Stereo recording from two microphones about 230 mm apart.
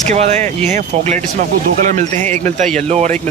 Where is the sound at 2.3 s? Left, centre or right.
Right.